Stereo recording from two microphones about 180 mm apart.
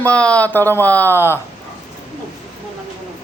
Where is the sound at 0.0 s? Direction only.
5° left (ahead or behind).